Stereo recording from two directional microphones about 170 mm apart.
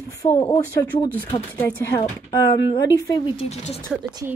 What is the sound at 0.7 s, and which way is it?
Speech, 10° left (ahead or behind).